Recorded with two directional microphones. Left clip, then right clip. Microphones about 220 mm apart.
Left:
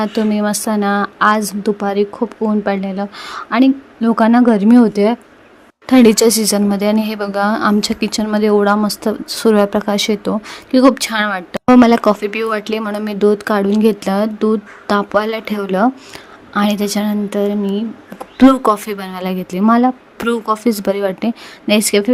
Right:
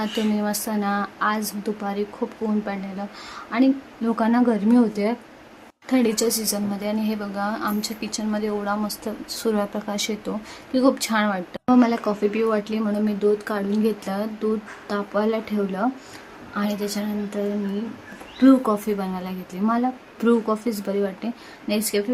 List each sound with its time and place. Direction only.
0.0 s a woman's voice: 35° left (ahead or behind)